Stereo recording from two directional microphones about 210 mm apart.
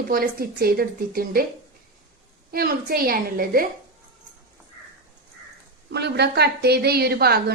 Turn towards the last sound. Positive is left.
turn(degrees=-50)  # may be behind; listen again after turning